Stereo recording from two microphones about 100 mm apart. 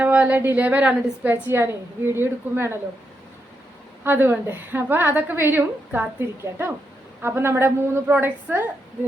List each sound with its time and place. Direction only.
0.0 s a woman's voice: 15° right (ahead or behind)
4.0 s a woman's voice: 20° right (ahead or behind)